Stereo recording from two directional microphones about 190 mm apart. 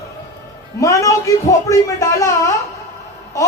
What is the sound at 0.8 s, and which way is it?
A man's voice, 15° left (ahead or behind).